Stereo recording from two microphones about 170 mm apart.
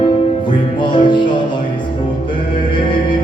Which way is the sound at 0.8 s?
30° left (ahead or behind).